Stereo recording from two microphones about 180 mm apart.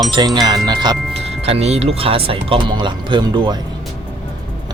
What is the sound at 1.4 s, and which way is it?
Speech, 35° right (ahead or behind).